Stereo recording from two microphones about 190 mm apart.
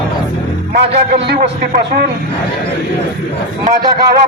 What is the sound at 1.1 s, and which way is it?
Speech, 55° right (ahead or behind).